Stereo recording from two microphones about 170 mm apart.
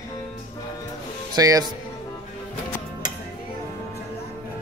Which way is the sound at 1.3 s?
20° right (ahead or behind).